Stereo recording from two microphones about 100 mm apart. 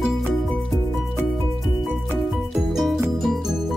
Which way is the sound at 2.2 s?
Centre (ahead or behind).